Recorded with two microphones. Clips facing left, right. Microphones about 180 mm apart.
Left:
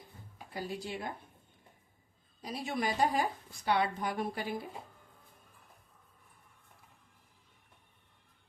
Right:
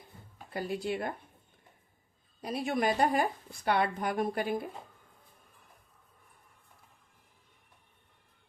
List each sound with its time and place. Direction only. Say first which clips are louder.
0.5 s a woman's voice: right 6 dB; 60° right (ahead or behind)
2.4 s a woman's voice: right 5 dB; 60° right (ahead or behind)